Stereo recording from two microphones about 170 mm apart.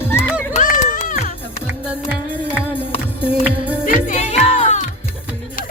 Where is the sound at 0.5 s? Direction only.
45° left (ahead or behind).